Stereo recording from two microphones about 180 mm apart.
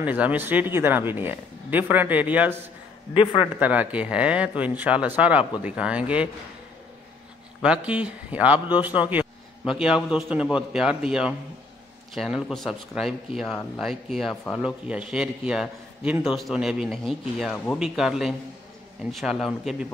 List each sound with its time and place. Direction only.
0.0 s speech: 10° right (ahead or behind)
3.2 s a man's voice: 30° left (ahead or behind)
3.5 s speech: 10° right (ahead or behind)
7.6 s a man's voice: 5° right (ahead or behind)
14.3 s speech: 10° left (ahead or behind)
14.6 s a man's voice: 5° right (ahead or behind)